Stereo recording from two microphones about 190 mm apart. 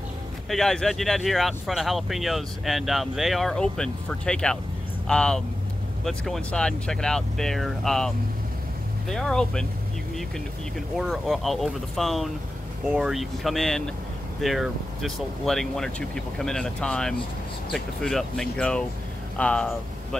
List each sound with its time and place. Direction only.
0.5 s speech: centre (ahead or behind)
9.1 s speech: 5° left (ahead or behind)
11.0 s speech: centre (ahead or behind)